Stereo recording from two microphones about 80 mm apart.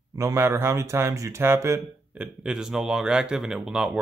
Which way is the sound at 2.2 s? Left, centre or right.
Centre.